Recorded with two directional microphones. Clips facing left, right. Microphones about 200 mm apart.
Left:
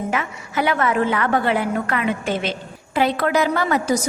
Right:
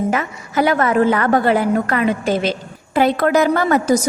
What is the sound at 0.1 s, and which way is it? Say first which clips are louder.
A woman's voice: right 4 dB; 40° right (ahead or behind).